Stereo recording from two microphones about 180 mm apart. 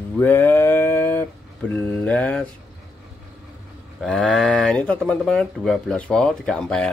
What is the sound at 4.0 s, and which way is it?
Speech, 5° left (ahead or behind).